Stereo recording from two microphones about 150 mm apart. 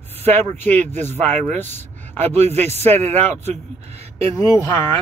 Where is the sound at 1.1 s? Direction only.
50° right (ahead or behind).